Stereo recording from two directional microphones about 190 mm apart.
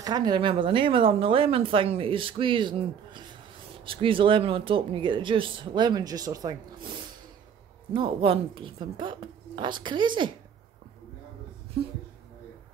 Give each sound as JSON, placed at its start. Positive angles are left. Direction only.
{"t": 0.0, "sound": "a woman's voice", "side_deg": -20}